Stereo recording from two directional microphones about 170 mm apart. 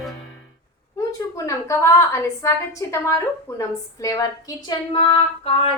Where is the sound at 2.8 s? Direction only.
20° left (ahead or behind).